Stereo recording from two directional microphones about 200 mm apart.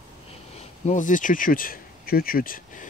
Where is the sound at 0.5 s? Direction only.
35° left (ahead or behind).